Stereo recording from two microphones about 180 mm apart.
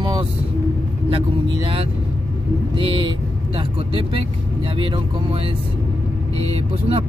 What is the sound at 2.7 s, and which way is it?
Speech, 30° right (ahead or behind).